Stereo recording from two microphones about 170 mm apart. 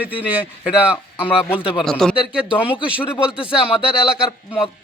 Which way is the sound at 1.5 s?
30° left (ahead or behind).